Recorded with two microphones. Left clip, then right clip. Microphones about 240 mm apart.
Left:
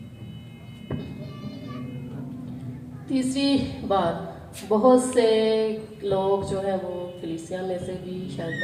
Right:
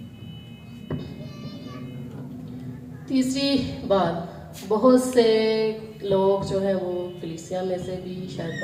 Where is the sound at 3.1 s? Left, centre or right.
Right.